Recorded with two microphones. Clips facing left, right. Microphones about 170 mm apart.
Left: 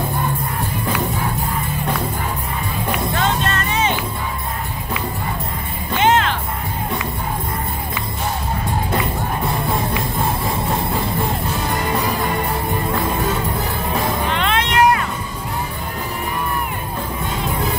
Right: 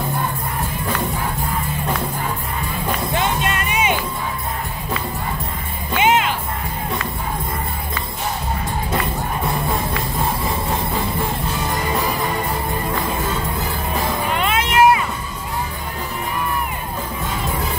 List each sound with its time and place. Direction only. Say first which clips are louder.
3.2 s music: left 1 dB; 15° right (ahead or behind)
5.9 s music: left 1 dB; 10° right (ahead or behind)
14.3 s music: right 3 dB; 5° right (ahead or behind)